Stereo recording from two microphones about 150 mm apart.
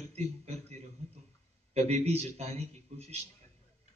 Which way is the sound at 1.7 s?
45° right (ahead or behind).